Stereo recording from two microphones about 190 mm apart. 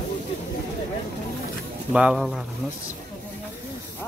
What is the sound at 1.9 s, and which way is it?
Speech, 5° right (ahead or behind).